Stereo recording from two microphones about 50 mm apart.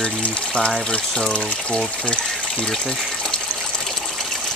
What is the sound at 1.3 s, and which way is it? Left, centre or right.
Speech, left.